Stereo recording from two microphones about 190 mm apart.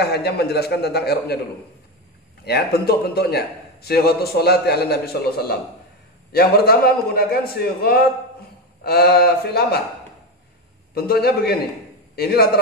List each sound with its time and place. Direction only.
0.0 s a man's voice: 60° left (ahead or behind)
2.4 s a man's voice: 55° left (ahead or behind)
11.0 s a man's voice: 55° left (ahead or behind)